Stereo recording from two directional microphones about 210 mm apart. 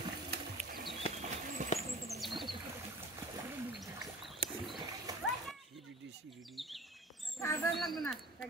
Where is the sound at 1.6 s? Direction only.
35° right (ahead or behind).